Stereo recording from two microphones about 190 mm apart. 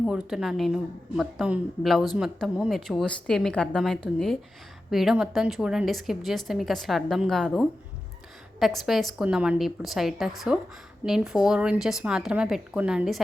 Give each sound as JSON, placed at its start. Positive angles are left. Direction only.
{"t": 0.0, "sound": "a woman's voice", "side_deg": 0}